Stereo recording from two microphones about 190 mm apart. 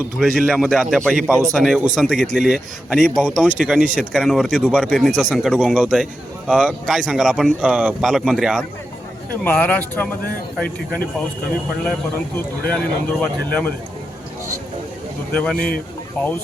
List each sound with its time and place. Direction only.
0.2 s speech: centre (ahead or behind)
9.3 s speech: 10° left (ahead or behind)
12.6 s speech: 5° left (ahead or behind)
15.3 s speech: 5° left (ahead or behind)
15.5 s speech: 50° left (ahead or behind)
16.2 s speech: 5° left (ahead or behind)